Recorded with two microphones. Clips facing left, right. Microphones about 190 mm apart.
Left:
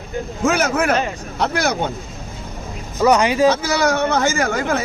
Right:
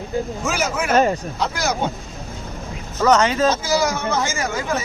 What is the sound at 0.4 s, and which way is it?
Speech, 60° left (ahead or behind).